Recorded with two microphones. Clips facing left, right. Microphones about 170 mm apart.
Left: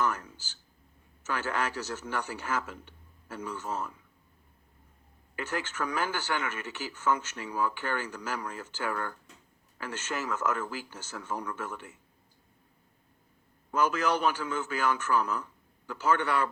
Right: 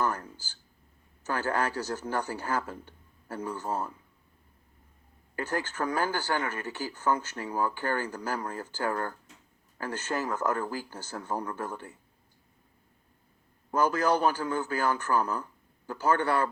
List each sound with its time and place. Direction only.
1.5 s speech: 35° right (ahead or behind)
5.5 s speech: 35° right (ahead or behind)
14.2 s speech: 35° right (ahead or behind)